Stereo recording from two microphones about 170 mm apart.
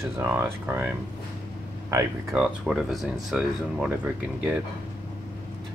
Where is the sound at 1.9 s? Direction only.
20° right (ahead or behind).